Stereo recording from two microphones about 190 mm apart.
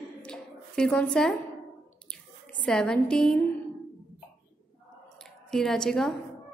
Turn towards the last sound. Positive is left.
turn(degrees=0)  # may be behind; listen again after turning